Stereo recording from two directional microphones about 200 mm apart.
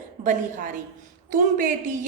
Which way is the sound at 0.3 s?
40° right (ahead or behind).